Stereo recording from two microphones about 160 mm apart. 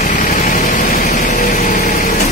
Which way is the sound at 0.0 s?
50° left (ahead or behind).